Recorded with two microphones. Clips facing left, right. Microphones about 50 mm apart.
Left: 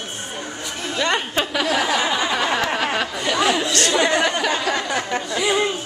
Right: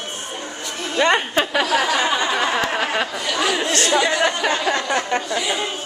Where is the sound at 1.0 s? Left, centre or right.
Centre.